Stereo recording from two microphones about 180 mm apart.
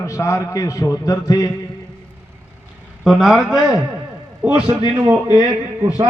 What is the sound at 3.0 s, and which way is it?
Speech, centre (ahead or behind).